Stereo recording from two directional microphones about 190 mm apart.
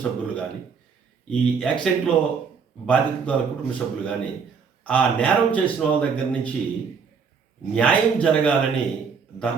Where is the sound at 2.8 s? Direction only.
5° left (ahead or behind).